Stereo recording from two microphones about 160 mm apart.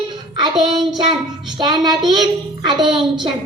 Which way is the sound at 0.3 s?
25° right (ahead or behind).